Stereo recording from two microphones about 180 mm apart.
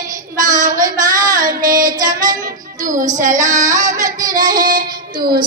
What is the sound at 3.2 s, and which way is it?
Female singing, 45° right (ahead or behind).